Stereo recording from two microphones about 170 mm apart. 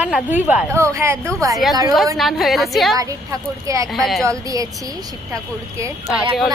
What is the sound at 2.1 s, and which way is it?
Speech, centre (ahead or behind).